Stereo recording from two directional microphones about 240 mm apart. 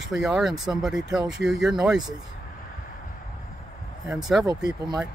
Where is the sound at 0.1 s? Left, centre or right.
Centre.